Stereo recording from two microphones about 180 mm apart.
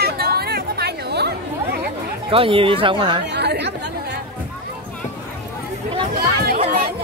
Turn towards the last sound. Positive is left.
turn(degrees=-55)  # may be behind; listen again after turning